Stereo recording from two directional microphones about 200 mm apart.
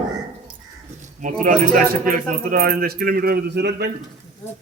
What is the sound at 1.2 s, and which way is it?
Speech, 40° right (ahead or behind).